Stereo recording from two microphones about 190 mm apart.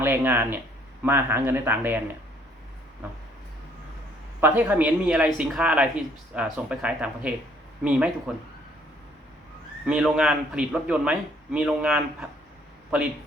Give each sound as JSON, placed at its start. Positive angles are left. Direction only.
{"t": 0.0, "sound": "speech", "side_deg": -10}
{"t": 4.4, "sound": "speech", "side_deg": -10}
{"t": 9.8, "sound": "a man's voice", "side_deg": -5}